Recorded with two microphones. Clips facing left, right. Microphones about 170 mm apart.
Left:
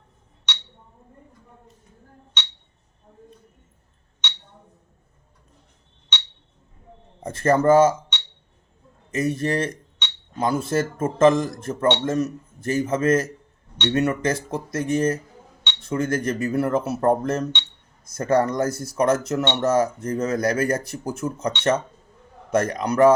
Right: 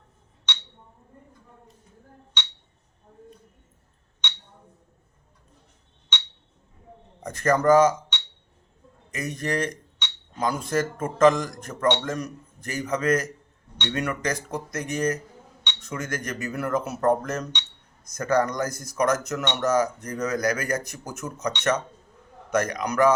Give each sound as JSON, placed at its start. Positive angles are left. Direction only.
{"t": 7.2, "sound": "speech", "side_deg": 25}